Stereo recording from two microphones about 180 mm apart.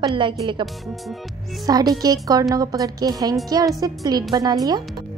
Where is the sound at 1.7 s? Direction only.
20° right (ahead or behind).